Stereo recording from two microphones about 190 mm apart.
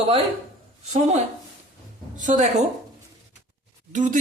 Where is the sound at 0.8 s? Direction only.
35° right (ahead or behind).